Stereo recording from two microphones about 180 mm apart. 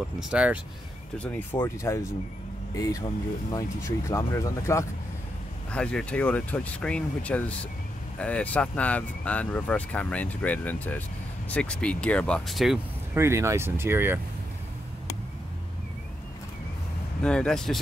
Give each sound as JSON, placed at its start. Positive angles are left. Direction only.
{"t": 0.2, "sound": "speech", "side_deg": -5}
{"t": 1.1, "sound": "speech", "side_deg": 10}
{"t": 5.7, "sound": "speech", "side_deg": 5}
{"t": 13.2, "sound": "speech", "side_deg": -15}
{"t": 17.2, "sound": "speech", "side_deg": 5}